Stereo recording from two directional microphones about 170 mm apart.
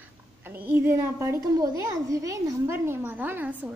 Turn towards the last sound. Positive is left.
turn(degrees=-10)  # may be behind; listen again after turning